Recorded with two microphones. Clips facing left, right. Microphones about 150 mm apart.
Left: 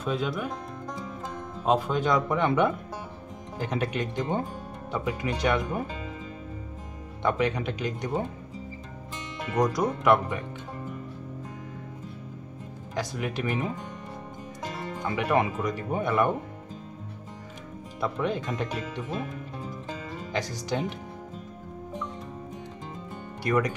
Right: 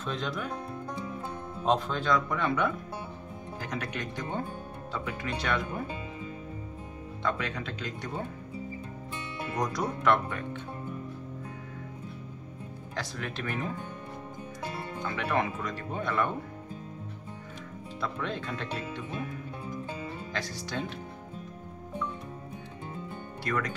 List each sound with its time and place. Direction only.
0.0 s speech: 10° left (ahead or behind)
1.7 s speech: 10° left (ahead or behind)
7.2 s speech: 20° left (ahead or behind)
9.7 s speech: 10° left (ahead or behind)
13.2 s speech: 15° left (ahead or behind)
15.0 s speech: 15° left (ahead or behind)
18.0 s speech: 15° left (ahead or behind)
20.7 s speech: 20° left (ahead or behind)
23.4 s speech: 15° left (ahead or behind)